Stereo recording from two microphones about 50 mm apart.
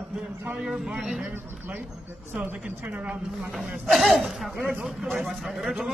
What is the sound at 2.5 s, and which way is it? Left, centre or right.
Speech, right.